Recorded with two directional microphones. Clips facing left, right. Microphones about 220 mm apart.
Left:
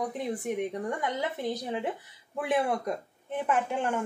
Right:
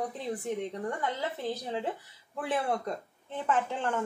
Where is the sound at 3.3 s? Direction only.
15° left (ahead or behind).